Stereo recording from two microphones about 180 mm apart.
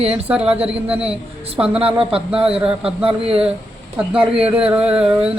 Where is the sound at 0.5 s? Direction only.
10° right (ahead or behind).